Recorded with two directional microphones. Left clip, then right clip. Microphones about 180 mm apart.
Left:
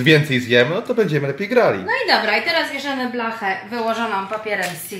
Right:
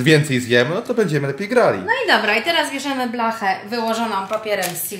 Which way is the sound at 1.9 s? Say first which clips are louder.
Right 1 dB; 60° right (ahead or behind).